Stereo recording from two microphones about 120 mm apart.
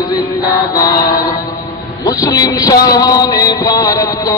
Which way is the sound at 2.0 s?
30° left (ahead or behind).